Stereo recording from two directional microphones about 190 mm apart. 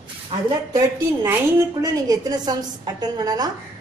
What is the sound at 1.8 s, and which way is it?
A woman's voice, 20° right (ahead or behind).